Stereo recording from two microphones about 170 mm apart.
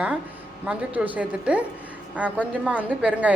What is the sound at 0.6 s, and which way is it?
A woman's voice, 10° right (ahead or behind).